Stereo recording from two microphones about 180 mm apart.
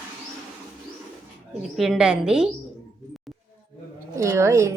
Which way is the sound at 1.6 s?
Centre (ahead or behind).